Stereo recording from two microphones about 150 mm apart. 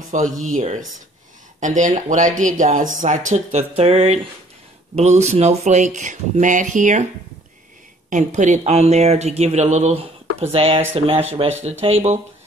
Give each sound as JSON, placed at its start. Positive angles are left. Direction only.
{"t": 0.1, "sound": "speech", "side_deg": -55}
{"t": 8.1, "sound": "speech", "side_deg": -55}
{"t": 10.5, "sound": "speech", "side_deg": -40}